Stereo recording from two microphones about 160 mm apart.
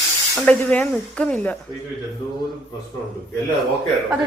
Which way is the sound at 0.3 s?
5° left (ahead or behind).